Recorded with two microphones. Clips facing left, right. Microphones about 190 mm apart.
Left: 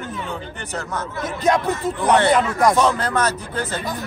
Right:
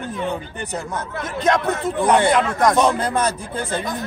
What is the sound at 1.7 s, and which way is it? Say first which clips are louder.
Speech: right 1 dB; 55° right (ahead or behind).